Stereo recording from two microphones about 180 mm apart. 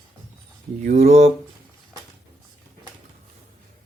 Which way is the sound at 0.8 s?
40° right (ahead or behind).